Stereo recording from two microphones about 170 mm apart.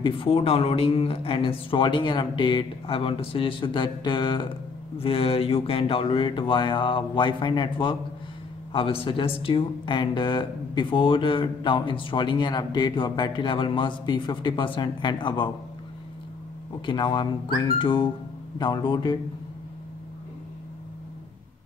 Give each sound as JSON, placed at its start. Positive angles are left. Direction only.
{"t": 0.0, "sound": "speech", "side_deg": 30}
{"t": 16.8, "sound": "speech", "side_deg": 25}